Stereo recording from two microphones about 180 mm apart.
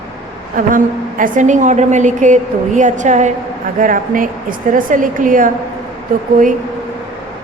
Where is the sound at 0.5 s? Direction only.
50° right (ahead or behind).